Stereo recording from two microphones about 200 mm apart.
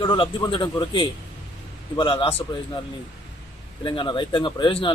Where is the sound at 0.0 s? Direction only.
25° left (ahead or behind).